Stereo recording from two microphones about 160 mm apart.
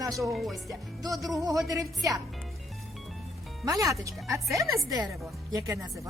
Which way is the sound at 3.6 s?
20° right (ahead or behind).